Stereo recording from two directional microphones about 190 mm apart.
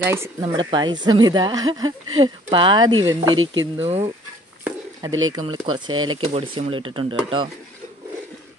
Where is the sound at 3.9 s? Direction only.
35° right (ahead or behind).